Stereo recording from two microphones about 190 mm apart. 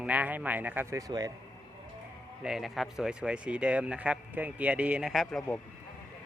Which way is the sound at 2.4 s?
Centre (ahead or behind).